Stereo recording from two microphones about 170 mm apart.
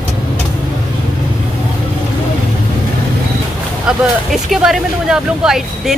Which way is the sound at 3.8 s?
Centre (ahead or behind).